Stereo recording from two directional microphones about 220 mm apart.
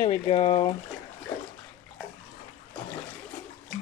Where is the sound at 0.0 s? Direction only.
25° left (ahead or behind).